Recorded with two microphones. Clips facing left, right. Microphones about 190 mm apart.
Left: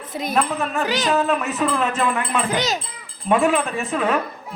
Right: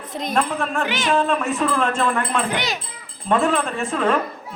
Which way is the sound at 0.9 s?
40° left (ahead or behind).